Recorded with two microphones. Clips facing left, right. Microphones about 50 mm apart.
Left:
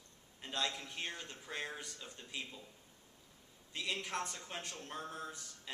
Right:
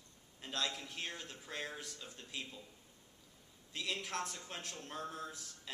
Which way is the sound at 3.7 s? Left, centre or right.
Centre.